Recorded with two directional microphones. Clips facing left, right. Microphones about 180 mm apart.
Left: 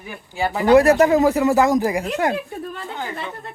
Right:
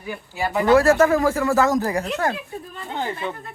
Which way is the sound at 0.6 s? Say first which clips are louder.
Left 2 dB; 20° left (ahead or behind).